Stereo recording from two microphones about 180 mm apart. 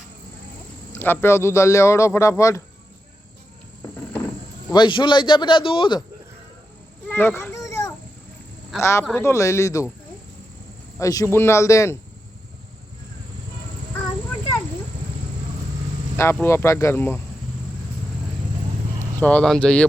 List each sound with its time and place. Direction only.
0.9 s a man's voice: 10° left (ahead or behind)
4.7 s speech: 25° left (ahead or behind)
7.1 s children playing: 15° left (ahead or behind)
8.8 s a man's voice: 15° left (ahead or behind)
10.9 s a man's voice: 20° left (ahead or behind)
16.1 s a man's voice: 15° left (ahead or behind)
19.2 s speech: 5° left (ahead or behind)